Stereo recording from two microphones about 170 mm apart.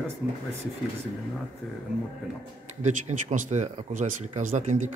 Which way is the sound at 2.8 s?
45° right (ahead or behind).